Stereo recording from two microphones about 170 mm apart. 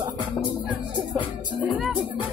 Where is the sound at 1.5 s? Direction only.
Centre (ahead or behind).